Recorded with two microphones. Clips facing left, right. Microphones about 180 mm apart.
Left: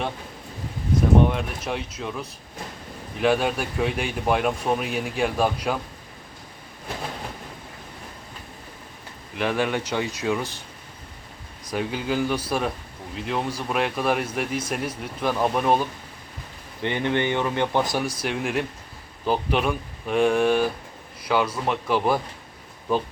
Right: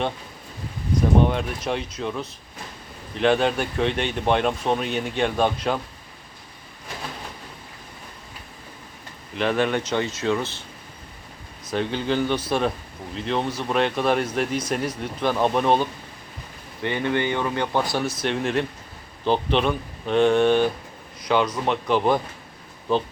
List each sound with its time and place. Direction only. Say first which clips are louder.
1.2 s speech: even; centre (ahead or behind)
9.4 s speech: right 2 dB; 10° left (ahead or behind)
11.7 s speech: right 2 dB; 5° left (ahead or behind)
16.8 s speech: even; 20° left (ahead or behind)